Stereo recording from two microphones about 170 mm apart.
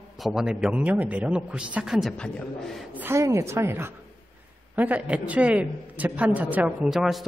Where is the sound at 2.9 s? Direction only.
15° right (ahead or behind).